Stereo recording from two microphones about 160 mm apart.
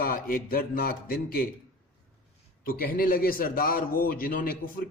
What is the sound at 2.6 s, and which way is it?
A man's voice, 65° left (ahead or behind).